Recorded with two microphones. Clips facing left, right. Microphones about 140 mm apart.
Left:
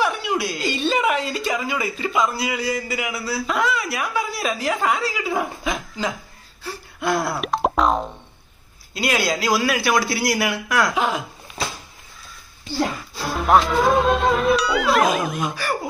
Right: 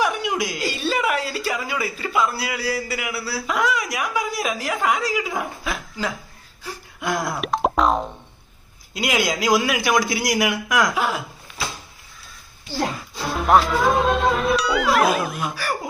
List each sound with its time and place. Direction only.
0.0 s a man's voice: 15° right (ahead or behind)
5.3 s speech: 10° left (ahead or behind)
6.6 s gasp: 15° right (ahead or behind)
7.3 s boing: centre (ahead or behind)
8.9 s a man's voice: 15° right (ahead or behind)
13.2 s speech: centre (ahead or behind)